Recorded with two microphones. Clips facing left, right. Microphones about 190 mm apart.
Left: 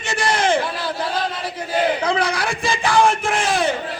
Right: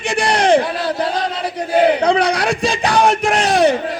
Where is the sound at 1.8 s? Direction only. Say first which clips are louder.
Right 6 dB; 65° right (ahead or behind).